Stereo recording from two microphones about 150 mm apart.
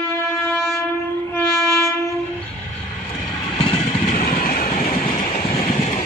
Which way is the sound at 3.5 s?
45° left (ahead or behind).